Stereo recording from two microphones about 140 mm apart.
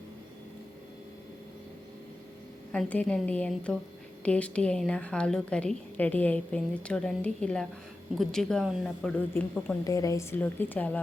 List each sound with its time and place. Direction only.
2.7 s a woman's voice: 10° left (ahead or behind)
9.8 s a woman's voice: 25° left (ahead or behind)